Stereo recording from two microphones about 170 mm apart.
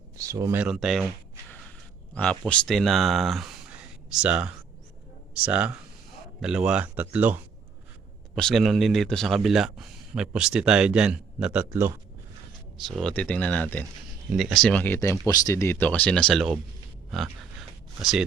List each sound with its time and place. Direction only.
0.2 s speech: 20° right (ahead or behind)
0.6 s speech: centre (ahead or behind)
2.1 s speech: 5° left (ahead or behind)
8.4 s speech: centre (ahead or behind); by 11.9 s 15° right (ahead or behind)
12.7 s speech: centre (ahead or behind)